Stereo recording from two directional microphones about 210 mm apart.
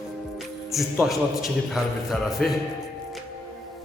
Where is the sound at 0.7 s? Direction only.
Centre (ahead or behind).